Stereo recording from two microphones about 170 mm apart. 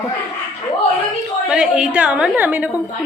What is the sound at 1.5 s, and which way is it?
A woman's voice, 5° right (ahead or behind).